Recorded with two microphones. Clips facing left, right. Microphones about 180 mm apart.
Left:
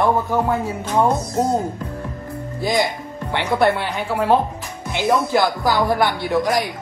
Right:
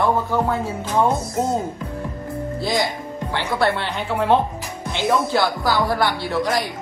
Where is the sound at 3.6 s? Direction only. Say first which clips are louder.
Left 3 dB; 15° left (ahead or behind).